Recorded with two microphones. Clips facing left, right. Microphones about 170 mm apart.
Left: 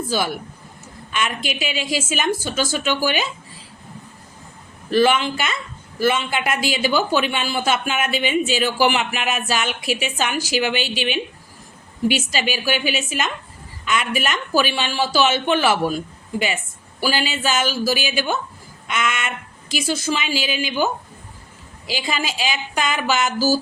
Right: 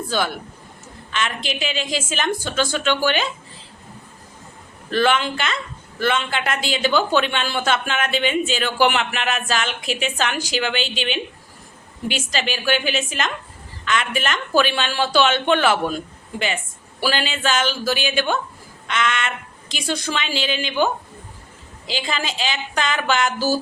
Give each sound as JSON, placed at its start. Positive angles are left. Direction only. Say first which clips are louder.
{"t": 0.1, "sound": "speech", "louder": "right 1 dB", "side_deg": 5}
{"t": 4.9, "sound": "speech", "louder": "left 2 dB", "side_deg": 10}
{"t": 17.0, "sound": "speech", "louder": "even", "side_deg": 5}